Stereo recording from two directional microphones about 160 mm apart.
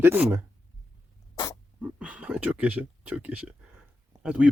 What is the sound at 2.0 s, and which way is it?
Speech, 5° right (ahead or behind).